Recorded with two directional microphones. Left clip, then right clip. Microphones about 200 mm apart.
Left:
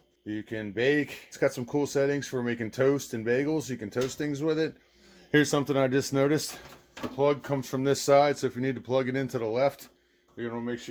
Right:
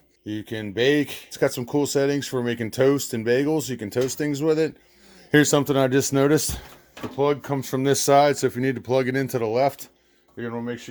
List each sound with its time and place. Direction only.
0.3 s speech: 45° right (ahead or behind)